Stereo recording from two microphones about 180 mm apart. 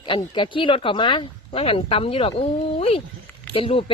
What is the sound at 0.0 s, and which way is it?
A woman's voice, 25° left (ahead or behind).